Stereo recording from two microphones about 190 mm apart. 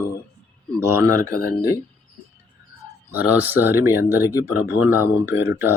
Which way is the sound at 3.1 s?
10° right (ahead or behind).